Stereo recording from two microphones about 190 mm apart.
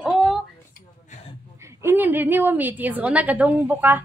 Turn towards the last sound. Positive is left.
turn(degrees=-10)  # may be behind; listen again after turning